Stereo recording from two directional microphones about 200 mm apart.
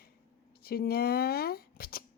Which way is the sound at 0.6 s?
50° left (ahead or behind).